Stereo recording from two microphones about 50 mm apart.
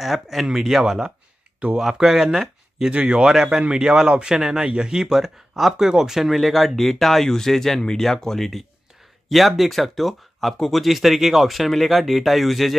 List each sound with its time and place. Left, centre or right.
0.0 s a man's voice: centre
1.6 s speech: right
2.0 s speech: centre
2.9 s speech: right
3.3 s a man's voice: centre
6.3 s speech: centre